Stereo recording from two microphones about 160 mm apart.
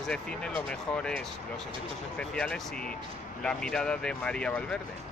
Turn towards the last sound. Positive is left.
turn(degrees=5)  # may be behind; listen again after turning